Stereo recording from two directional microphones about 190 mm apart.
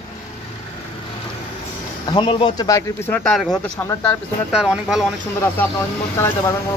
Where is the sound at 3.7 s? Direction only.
15° left (ahead or behind).